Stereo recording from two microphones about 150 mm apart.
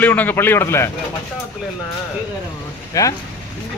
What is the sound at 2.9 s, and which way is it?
Speech, 20° left (ahead or behind).